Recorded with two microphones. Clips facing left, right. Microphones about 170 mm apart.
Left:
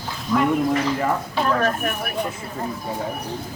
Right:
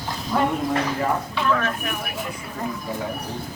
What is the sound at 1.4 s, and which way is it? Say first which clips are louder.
Speech: left 5 dB; 40° left (ahead or behind).